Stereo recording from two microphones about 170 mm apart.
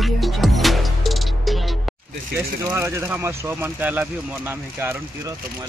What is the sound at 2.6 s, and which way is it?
Speech, 15° right (ahead or behind).